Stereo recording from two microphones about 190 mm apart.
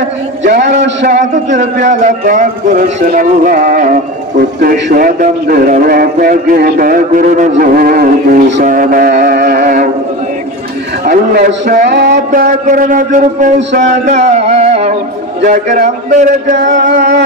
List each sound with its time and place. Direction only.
0.4 s a man's voice: 65° right (ahead or behind)
1.5 s a man's voice: 40° right (ahead or behind)
11.1 s a man's voice: 45° right (ahead or behind)
11.9 s a sound: 65° right (ahead or behind)
12.3 s a man's voice: 45° right (ahead or behind)